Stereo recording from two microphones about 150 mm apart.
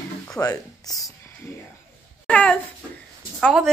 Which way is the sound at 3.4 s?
Centre (ahead or behind).